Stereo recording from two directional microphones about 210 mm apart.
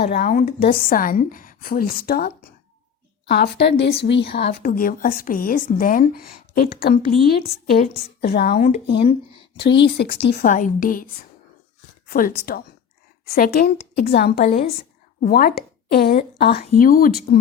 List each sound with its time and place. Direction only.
0.1 s a woman's voice: 40° left (ahead or behind)
9.0 s speech: 25° left (ahead or behind)
9.6 s a woman's voice: 55° left (ahead or behind)
10.5 s a woman's voice: 40° left (ahead or behind)
14.4 s a woman's voice: 35° left (ahead or behind)
15.2 s a woman's voice: 45° left (ahead or behind)